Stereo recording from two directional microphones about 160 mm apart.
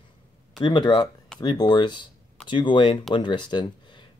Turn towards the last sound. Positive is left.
turn(degrees=30)  # may be behind; listen again after turning